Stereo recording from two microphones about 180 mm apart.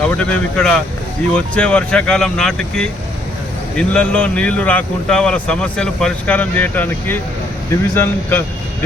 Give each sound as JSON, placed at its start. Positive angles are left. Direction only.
{"t": 0.1, "sound": "speech", "side_deg": 5}